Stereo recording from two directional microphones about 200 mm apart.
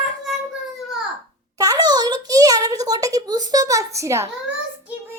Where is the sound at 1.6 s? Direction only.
20° right (ahead or behind).